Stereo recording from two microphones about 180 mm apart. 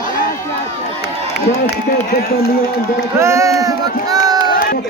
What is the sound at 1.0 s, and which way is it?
Speech, 65° left (ahead or behind).